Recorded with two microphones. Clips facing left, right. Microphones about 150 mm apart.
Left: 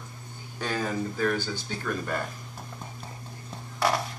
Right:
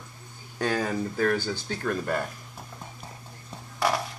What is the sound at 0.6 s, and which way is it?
Speech, 45° right (ahead or behind).